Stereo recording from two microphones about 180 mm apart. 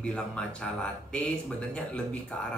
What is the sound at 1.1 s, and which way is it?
Speech, 5° left (ahead or behind).